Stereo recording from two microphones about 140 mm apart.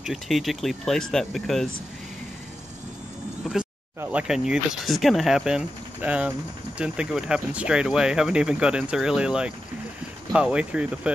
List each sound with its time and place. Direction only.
0.0 s speech: centre (ahead or behind)
4.0 s speech: 10° right (ahead or behind)